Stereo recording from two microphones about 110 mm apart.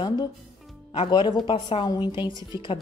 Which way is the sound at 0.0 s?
40° left (ahead or behind).